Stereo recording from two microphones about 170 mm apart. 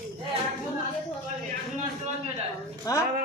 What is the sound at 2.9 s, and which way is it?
Speech, 20° left (ahead or behind).